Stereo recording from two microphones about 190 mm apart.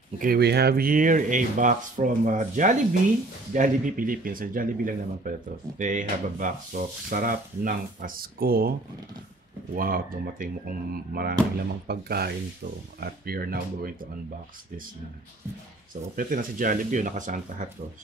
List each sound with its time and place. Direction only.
0.2 s speech: 55° right (ahead or behind)
9.8 s speech: 50° right (ahead or behind)
15.9 s speech: 45° right (ahead or behind)